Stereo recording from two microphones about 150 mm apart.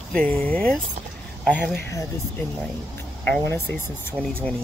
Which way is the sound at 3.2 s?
10° left (ahead or behind).